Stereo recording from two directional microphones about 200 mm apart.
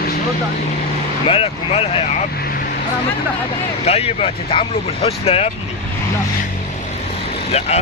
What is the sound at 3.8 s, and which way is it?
Speech, 30° left (ahead or behind).